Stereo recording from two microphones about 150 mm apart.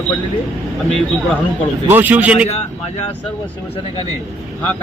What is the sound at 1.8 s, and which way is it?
Speech, 10° right (ahead or behind).